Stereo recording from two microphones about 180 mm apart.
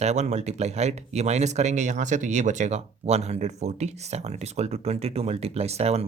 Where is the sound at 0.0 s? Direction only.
40° right (ahead or behind).